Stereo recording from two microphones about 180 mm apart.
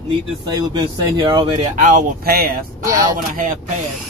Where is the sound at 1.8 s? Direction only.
55° right (ahead or behind).